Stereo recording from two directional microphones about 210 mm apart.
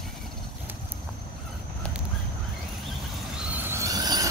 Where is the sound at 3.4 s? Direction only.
10° right (ahead or behind).